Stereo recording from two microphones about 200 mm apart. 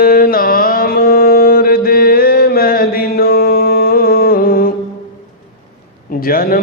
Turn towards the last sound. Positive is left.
turn(degrees=45)  # may be behind; listen again after turning